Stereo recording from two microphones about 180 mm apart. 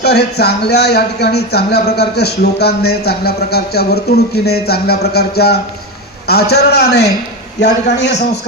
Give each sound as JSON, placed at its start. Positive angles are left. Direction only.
{"t": 0.0, "sound": "a man's voice", "side_deg": 65}